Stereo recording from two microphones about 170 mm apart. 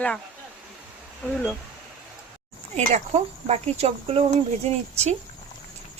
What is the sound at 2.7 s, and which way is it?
Speech, 40° right (ahead or behind).